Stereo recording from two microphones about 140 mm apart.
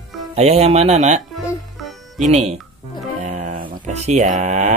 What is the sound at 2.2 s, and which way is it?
Speech, 55° right (ahead or behind).